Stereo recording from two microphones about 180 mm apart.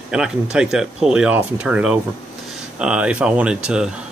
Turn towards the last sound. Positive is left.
turn(degrees=-5)  # may be behind; listen again after turning